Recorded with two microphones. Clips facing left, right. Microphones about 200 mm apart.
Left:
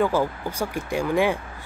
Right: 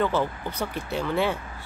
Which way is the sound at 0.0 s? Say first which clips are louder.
Left 3 dB; 10° left (ahead or behind).